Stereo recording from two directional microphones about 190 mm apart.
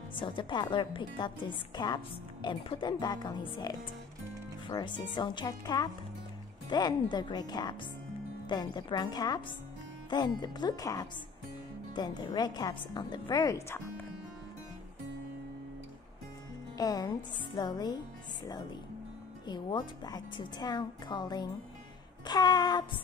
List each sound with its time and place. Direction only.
0.1 s a woman's voice: 25° left (ahead or behind)
16.7 s a woman's voice: 20° left (ahead or behind)
19.4 s a woman's voice: 25° left (ahead or behind)